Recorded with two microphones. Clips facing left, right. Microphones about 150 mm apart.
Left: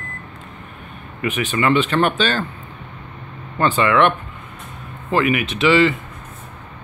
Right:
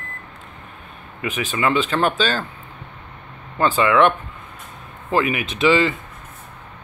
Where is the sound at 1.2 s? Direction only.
10° right (ahead or behind).